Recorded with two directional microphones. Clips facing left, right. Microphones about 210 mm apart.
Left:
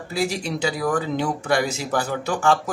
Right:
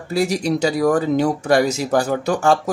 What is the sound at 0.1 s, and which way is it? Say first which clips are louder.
Speech: right 6 dB; 40° right (ahead or behind).